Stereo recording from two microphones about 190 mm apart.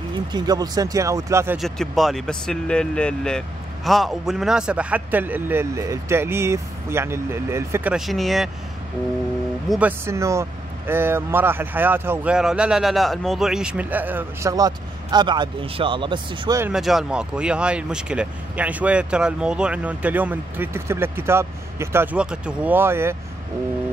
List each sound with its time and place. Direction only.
0.1 s speech: 20° right (ahead or behind)
1.6 s speech: centre (ahead or behind)
9.7 s speech: 10° right (ahead or behind)
16.7 s speech: centre (ahead or behind)